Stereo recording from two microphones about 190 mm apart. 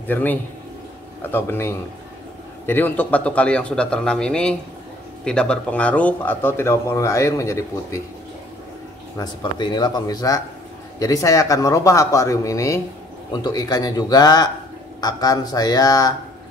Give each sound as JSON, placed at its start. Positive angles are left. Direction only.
{"t": 0.1, "sound": "a man's voice", "side_deg": 10}
{"t": 9.2, "sound": "a man's voice", "side_deg": 25}